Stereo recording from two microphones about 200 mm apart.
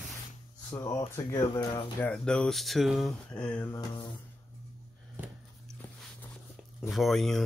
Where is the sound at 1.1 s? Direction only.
15° left (ahead or behind).